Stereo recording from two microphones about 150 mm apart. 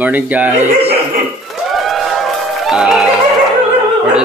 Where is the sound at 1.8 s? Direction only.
Centre (ahead or behind).